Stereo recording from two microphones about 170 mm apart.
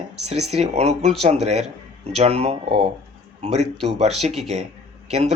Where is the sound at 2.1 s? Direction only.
35° right (ahead or behind).